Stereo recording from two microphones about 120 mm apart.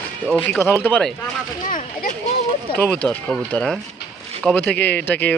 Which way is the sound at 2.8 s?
10° left (ahead or behind).